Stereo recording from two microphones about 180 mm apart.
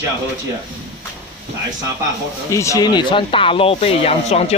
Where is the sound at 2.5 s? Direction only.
15° left (ahead or behind).